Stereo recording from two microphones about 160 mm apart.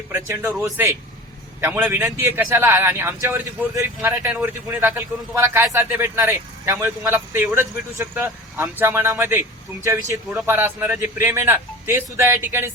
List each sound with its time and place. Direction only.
0.1 s a man's voice: 20° right (ahead or behind)
10.4 s a man's voice: 15° right (ahead or behind)